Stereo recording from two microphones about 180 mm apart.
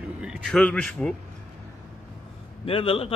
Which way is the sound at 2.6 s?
30° left (ahead or behind).